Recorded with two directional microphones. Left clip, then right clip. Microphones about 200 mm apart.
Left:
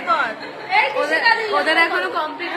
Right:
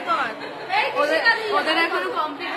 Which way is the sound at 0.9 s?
15° right (ahead or behind).